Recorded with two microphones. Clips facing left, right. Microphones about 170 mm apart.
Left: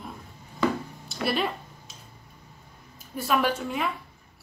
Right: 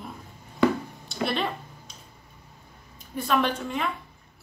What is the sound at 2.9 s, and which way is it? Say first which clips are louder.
Speech: right 1 dB; 5° left (ahead or behind).